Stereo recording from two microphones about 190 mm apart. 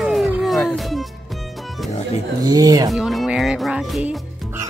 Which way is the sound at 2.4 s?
20° right (ahead or behind).